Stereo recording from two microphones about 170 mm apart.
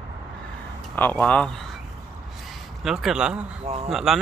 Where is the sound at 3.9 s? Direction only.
Centre (ahead or behind).